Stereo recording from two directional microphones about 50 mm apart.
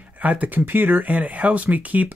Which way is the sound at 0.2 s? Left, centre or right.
Right.